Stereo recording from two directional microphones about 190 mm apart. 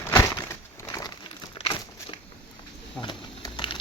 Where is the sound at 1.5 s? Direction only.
25° left (ahead or behind).